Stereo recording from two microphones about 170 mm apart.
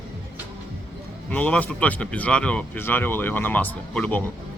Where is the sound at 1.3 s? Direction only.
10° left (ahead or behind).